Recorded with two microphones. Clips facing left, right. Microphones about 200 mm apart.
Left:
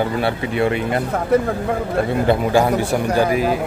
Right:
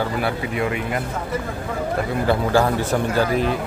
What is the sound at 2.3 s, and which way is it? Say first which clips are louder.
A man's voice: left 1 dB; 15° left (ahead or behind).